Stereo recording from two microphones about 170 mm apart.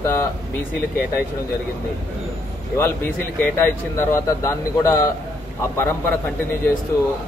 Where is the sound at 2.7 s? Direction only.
15° left (ahead or behind).